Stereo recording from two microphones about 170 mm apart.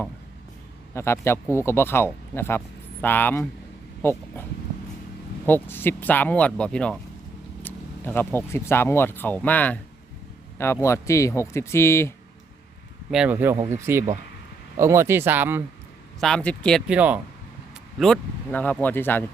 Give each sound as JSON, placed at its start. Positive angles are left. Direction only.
{"t": 0.9, "sound": "speech", "side_deg": 15}
{"t": 5.5, "sound": "speech", "side_deg": 10}
{"t": 13.1, "sound": "speech", "side_deg": -5}
{"t": 16.2, "sound": "speech", "side_deg": 5}
{"t": 16.9, "sound": "speech", "side_deg": -10}
{"t": 18.0, "sound": "speech", "side_deg": 5}